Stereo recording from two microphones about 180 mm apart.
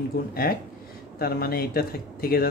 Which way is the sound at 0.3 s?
55° left (ahead or behind).